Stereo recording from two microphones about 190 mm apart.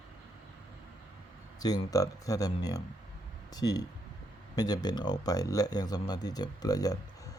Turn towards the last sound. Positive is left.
turn(degrees=20)  # may be behind; listen again after turning